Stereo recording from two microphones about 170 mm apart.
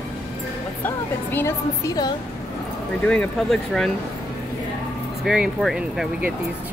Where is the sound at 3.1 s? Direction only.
5° left (ahead or behind).